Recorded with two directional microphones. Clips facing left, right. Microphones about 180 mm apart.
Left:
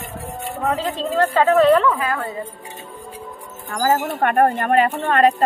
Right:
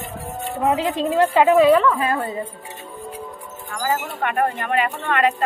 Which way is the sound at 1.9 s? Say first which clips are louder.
Right 2 dB; 25° right (ahead or behind).